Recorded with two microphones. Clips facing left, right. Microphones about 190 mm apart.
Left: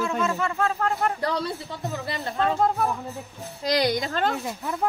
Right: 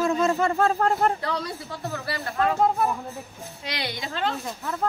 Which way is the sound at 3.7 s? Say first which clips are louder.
Left 9 dB; 40° left (ahead or behind).